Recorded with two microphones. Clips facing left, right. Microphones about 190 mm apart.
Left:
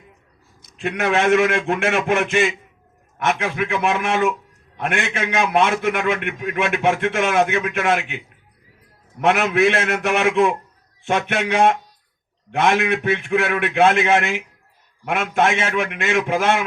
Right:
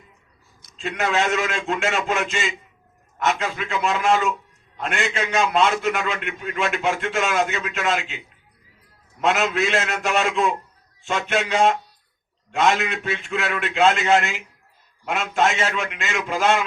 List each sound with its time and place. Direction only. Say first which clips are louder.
0.8 s a man's voice: left 3 dB; 60° left (ahead or behind)
9.2 s a man's voice: left 4 dB; 60° left (ahead or behind)